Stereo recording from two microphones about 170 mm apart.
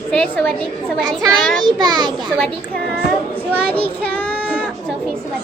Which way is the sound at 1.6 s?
25° right (ahead or behind).